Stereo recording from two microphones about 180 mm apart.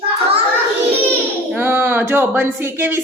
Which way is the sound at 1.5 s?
10° right (ahead or behind).